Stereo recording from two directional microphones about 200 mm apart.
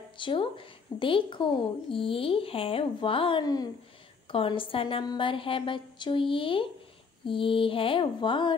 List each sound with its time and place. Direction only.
0.2 s a woman's voice: 25° left (ahead or behind)